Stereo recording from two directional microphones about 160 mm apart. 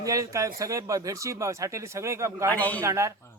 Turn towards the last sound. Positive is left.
turn(degrees=-20)  # may be behind; listen again after turning